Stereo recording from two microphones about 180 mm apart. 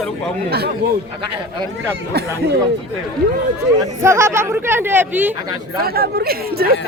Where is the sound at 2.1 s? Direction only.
60° right (ahead or behind).